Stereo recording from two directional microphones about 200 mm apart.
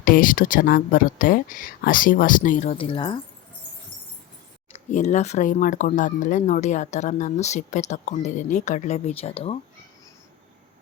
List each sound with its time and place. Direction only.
0.0 s speech: 45° left (ahead or behind); by 3.2 s 25° left (ahead or behind)
4.7 s speech: 35° left (ahead or behind)